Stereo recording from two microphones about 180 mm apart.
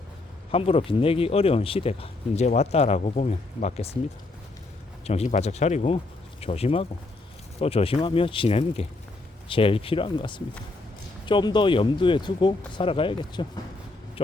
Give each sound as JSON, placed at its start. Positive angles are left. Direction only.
{"t": 0.5, "sound": "speech", "side_deg": 30}
{"t": 5.0, "sound": "speech", "side_deg": 35}